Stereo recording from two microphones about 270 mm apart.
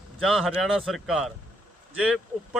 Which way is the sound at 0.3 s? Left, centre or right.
Centre.